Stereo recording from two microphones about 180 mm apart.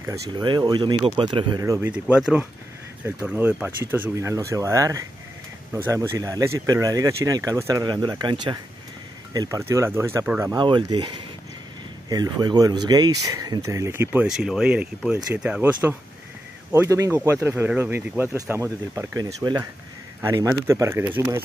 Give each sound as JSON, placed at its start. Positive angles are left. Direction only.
{"t": 0.0, "sound": "speech", "side_deg": -20}
{"t": 10.5, "sound": "speech", "side_deg": -25}
{"t": 12.1, "sound": "speech", "side_deg": -20}